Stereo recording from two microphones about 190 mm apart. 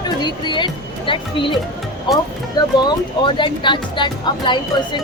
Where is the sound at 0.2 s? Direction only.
25° left (ahead or behind).